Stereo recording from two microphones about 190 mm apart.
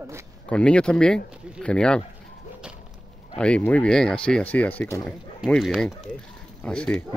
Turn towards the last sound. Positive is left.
turn(degrees=5)  # may be behind; listen again after turning